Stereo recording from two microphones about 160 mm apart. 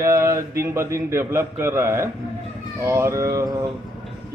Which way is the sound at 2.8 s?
20° right (ahead or behind).